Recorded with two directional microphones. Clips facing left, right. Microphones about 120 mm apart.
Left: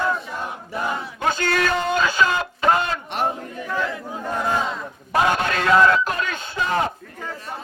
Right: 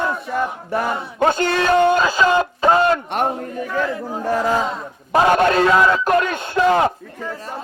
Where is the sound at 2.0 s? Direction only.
35° right (ahead or behind).